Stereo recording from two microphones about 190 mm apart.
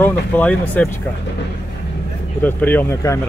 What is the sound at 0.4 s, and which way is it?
Speech, 5° left (ahead or behind).